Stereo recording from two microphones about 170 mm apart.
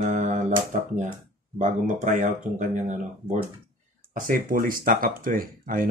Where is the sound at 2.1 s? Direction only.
45° right (ahead or behind).